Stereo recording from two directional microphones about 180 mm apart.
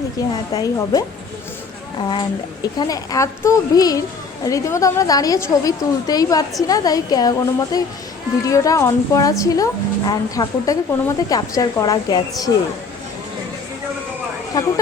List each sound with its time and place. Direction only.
0.2 s speech: 20° left (ahead or behind)
2.7 s a woman's voice: 20° left (ahead or behind)
14.5 s a woman's voice: 15° left (ahead or behind)